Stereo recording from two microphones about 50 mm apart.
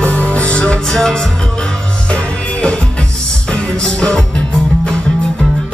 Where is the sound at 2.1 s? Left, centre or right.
Left.